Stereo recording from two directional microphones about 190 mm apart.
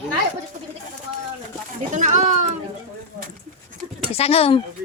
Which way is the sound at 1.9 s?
40° right (ahead or behind).